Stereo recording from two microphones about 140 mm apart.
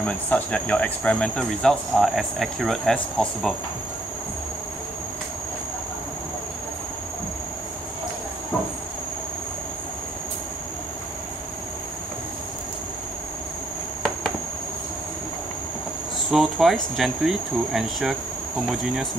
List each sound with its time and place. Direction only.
0.0 s speech: 10° left (ahead or behind)
16.3 s speech: centre (ahead or behind)